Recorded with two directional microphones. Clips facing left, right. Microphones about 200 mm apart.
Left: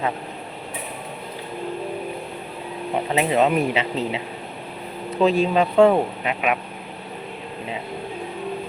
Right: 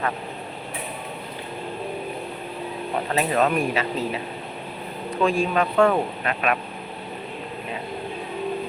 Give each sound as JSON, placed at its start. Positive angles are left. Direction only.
{"t": 3.1, "sound": "speech", "side_deg": 20}
{"t": 5.2, "sound": "speech", "side_deg": 25}